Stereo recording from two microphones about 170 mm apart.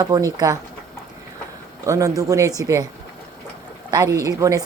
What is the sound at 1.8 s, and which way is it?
Speech, 20° right (ahead or behind).